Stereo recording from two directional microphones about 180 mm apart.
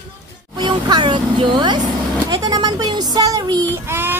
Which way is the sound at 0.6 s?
25° right (ahead or behind).